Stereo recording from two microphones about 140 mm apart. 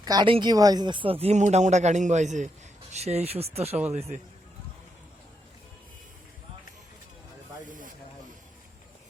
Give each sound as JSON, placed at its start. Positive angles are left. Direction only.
{"t": 0.0, "sound": "a man's voice", "side_deg": -30}
{"t": 7.7, "sound": "snake", "side_deg": -70}